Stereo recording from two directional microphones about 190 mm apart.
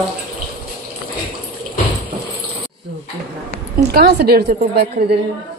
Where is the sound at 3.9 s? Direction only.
55° right (ahead or behind).